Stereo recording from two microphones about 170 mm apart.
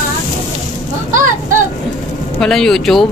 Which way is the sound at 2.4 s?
5° left (ahead or behind).